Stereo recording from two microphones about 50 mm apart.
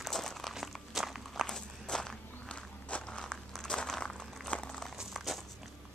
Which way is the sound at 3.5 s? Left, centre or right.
Centre.